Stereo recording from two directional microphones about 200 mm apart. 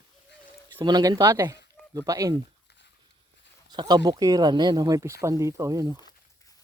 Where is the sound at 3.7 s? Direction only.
20° right (ahead or behind).